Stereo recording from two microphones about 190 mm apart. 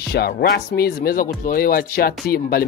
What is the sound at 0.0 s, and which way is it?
Speech, 55° left (ahead or behind).